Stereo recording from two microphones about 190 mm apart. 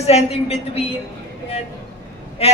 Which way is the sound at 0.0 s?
35° left (ahead or behind).